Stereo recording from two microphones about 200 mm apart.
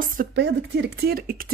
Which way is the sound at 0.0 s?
45° right (ahead or behind).